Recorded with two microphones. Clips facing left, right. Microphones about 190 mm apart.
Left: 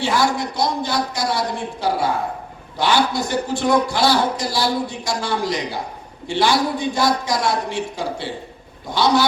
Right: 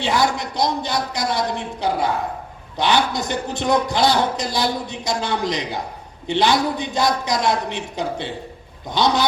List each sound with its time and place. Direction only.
0.0 s a man's voice: 20° right (ahead or behind)